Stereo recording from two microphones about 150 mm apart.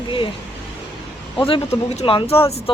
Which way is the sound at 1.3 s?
35° left (ahead or behind).